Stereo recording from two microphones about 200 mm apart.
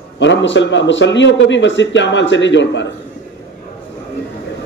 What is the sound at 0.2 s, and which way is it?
A man's voice, 65° left (ahead or behind).